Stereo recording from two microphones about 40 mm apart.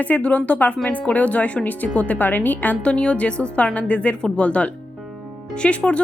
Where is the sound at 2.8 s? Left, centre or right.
Left.